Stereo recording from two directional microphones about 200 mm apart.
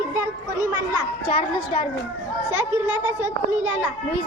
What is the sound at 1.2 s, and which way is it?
Speech, 25° left (ahead or behind).